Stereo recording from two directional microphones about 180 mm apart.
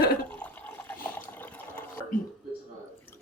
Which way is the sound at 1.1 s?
10° left (ahead or behind).